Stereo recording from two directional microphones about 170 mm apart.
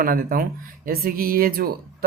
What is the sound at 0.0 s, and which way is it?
Speech, 55° right (ahead or behind).